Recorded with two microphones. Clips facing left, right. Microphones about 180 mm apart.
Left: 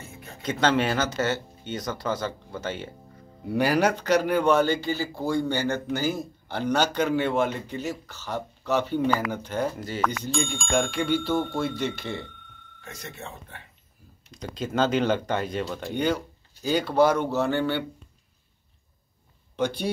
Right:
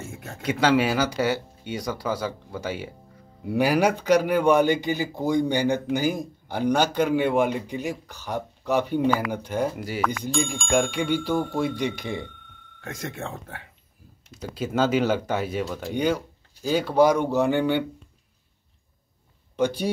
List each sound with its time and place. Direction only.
0.4 s speech: 10° right (ahead or behind)
11.0 s speech: 10° right (ahead or behind)
11.3 s speech: centre (ahead or behind)
11.8 s speech: 15° right (ahead or behind)
12.8 s speech: 90° right
14.3 s speech: 10° right (ahead or behind)
19.5 s speech: 10° right (ahead or behind)